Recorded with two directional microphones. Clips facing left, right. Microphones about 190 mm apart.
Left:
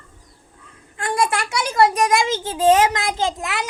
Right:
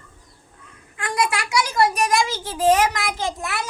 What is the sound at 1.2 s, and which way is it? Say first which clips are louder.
Speech: even; 50° left (ahead or behind).